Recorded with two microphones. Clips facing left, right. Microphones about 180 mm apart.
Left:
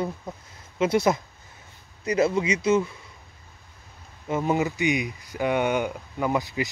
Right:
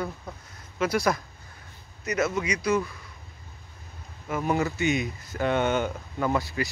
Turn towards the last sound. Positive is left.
turn(degrees=20)  # may be behind; listen again after turning